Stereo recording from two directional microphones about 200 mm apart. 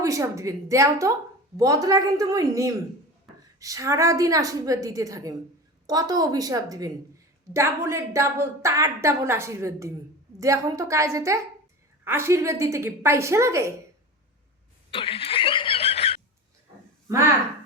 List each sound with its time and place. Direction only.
0.0 s a woman's voice: 15° right (ahead or behind)
14.8 s snicker: 25° left (ahead or behind)